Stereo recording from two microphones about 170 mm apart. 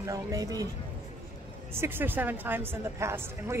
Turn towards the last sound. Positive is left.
turn(degrees=-15)  # may be behind; listen again after turning